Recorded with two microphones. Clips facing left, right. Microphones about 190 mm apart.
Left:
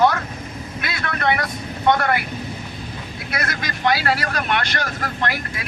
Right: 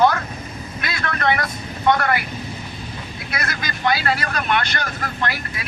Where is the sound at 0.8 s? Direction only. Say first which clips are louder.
Right 1 dB; 10° left (ahead or behind).